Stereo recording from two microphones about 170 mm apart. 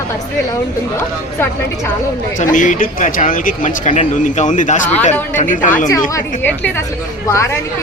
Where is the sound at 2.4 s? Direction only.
50° left (ahead or behind).